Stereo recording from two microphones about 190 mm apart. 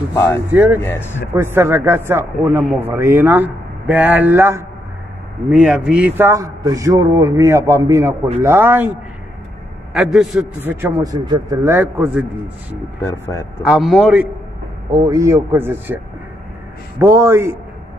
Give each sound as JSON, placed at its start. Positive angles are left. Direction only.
{"t": 0.1, "sound": "speech", "side_deg": 15}
{"t": 0.5, "sound": "a man's voice", "side_deg": -10}
{"t": 0.8, "sound": "speech", "side_deg": 10}
{"t": 1.3, "sound": "a man's voice", "side_deg": -10}
{"t": 9.9, "sound": "a man's voice", "side_deg": 0}
{"t": 13.0, "sound": "speech", "side_deg": 15}
{"t": 13.6, "sound": "a man's voice", "side_deg": 0}
{"t": 15.0, "sound": "a man's voice", "side_deg": -15}
{"t": 17.0, "sound": "a man's voice", "side_deg": -15}